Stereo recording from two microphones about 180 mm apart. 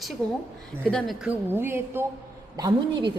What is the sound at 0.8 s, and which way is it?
A woman's voice, centre (ahead or behind).